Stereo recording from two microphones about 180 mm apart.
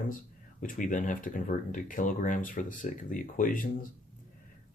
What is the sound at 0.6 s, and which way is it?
Speech, 45° left (ahead or behind).